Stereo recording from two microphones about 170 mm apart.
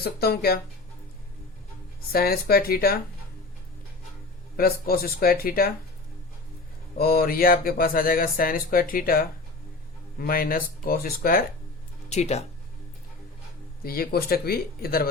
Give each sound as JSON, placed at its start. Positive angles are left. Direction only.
{"t": 0.0, "sound": "speech", "side_deg": 65}
{"t": 2.1, "sound": "speech", "side_deg": 65}
{"t": 4.5, "sound": "speech", "side_deg": 60}
{"t": 6.9, "sound": "speech", "side_deg": 60}
{"t": 12.0, "sound": "speech", "side_deg": 40}
{"t": 13.8, "sound": "speech", "side_deg": 60}